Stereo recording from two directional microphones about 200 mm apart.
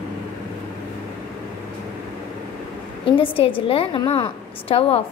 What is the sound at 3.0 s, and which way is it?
A woman's voice, 25° left (ahead or behind).